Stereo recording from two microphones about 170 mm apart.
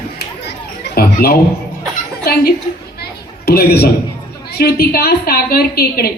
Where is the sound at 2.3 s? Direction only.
60° left (ahead or behind).